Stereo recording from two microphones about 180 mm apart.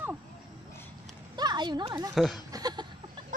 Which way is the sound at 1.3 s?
25° right (ahead or behind).